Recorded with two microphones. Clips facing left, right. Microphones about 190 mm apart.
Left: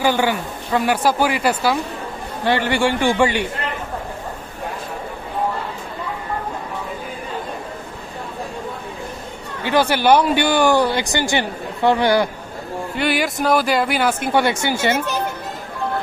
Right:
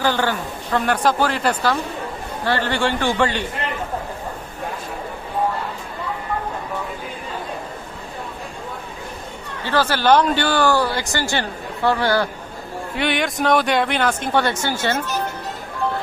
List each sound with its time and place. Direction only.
0.0 s speech: 15° left (ahead or behind)
9.7 s speech: 15° left (ahead or behind)
12.9 s speech: centre (ahead or behind)